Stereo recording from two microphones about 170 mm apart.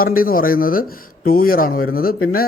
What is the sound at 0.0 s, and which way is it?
Speech, 55° left (ahead or behind).